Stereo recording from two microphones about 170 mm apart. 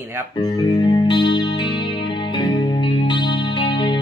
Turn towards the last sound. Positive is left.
turn(degrees=30)  # may be behind; listen again after turning